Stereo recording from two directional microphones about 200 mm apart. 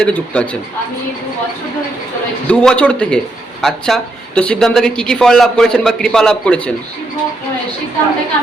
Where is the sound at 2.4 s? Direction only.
5° left (ahead or behind).